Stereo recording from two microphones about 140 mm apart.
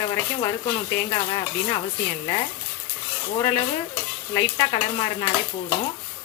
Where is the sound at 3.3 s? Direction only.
50° left (ahead or behind).